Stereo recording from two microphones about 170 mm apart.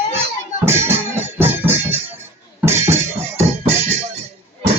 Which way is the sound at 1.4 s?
10° right (ahead or behind).